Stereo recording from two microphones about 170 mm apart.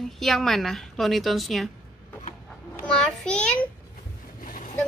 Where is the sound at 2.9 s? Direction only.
5° left (ahead or behind).